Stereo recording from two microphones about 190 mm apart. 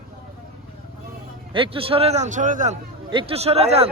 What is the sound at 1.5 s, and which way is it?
A man's voice, 25° right (ahead or behind).